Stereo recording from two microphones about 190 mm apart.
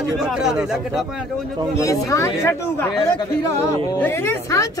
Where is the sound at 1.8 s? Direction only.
15° left (ahead or behind).